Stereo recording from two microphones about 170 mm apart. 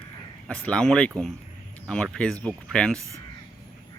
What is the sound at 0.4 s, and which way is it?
Speech, 5° left (ahead or behind).